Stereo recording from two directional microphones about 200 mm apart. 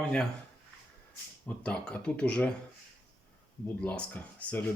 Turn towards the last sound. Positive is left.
turn(degrees=5)  # may be behind; listen again after turning